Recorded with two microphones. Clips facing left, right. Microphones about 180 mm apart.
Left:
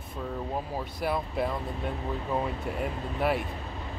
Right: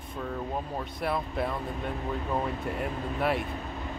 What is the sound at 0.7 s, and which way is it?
Speech, centre (ahead or behind).